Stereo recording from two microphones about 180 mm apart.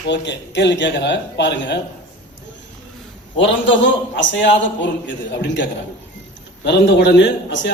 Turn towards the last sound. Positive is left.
turn(degrees=80)